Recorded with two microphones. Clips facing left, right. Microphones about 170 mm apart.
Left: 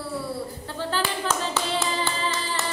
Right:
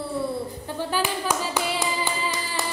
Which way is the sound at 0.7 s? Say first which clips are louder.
Right 1 dB; 15° right (ahead or behind).